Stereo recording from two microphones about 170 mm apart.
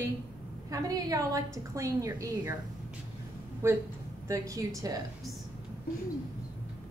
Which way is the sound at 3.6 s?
15° right (ahead or behind).